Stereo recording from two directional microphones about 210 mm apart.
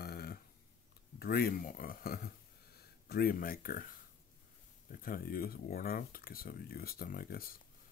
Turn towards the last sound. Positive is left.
turn(degrees=45)  # may be behind; listen again after turning